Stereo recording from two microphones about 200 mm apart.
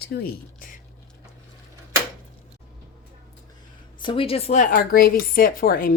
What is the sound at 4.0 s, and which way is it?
Speech, 25° left (ahead or behind).